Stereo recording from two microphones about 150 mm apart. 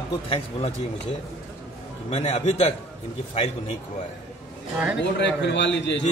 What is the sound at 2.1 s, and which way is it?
Speech, 45° left (ahead or behind).